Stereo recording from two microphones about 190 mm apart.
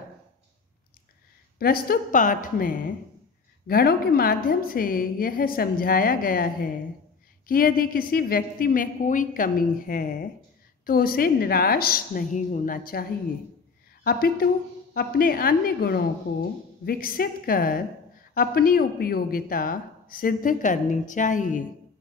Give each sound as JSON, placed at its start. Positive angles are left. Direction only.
{"t": 1.6, "sound": "a woman's voice", "side_deg": 50}
{"t": 14.0, "sound": "a woman's voice", "side_deg": 50}